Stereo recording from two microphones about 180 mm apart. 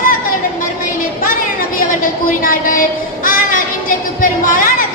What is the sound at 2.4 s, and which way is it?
Speech, 50° left (ahead or behind).